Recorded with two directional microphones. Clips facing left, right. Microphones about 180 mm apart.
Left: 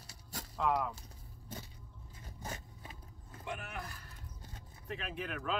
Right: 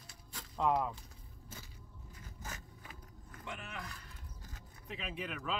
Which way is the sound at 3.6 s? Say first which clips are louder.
Left 2 dB; 5° left (ahead or behind).